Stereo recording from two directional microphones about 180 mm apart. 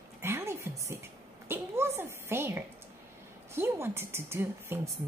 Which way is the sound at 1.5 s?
15° right (ahead or behind).